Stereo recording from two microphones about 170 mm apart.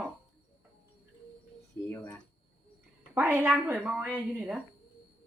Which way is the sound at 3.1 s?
10° right (ahead or behind).